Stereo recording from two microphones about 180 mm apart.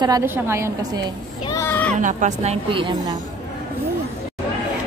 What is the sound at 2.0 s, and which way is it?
Speech, 45° right (ahead or behind).